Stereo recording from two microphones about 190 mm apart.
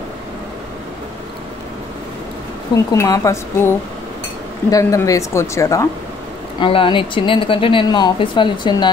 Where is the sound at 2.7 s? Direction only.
15° left (ahead or behind).